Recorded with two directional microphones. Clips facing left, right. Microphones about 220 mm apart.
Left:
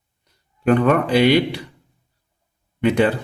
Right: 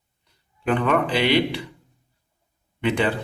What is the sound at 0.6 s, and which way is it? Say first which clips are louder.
A man's voice: left 5 dB; 45° left (ahead or behind).